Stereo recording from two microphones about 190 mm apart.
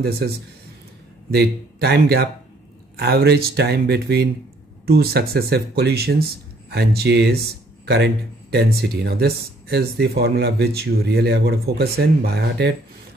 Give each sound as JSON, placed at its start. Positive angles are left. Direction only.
{"t": 1.3, "sound": "speech", "side_deg": -60}